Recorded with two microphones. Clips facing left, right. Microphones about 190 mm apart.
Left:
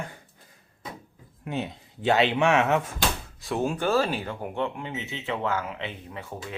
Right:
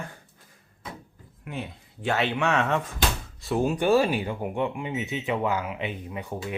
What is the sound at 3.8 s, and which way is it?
Speech, 15° right (ahead or behind).